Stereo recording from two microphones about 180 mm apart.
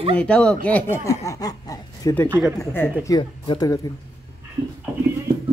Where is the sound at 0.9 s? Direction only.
15° left (ahead or behind).